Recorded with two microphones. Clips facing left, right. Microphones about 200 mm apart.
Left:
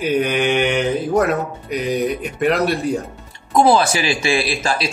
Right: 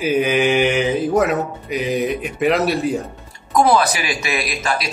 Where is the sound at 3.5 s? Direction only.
25° left (ahead or behind).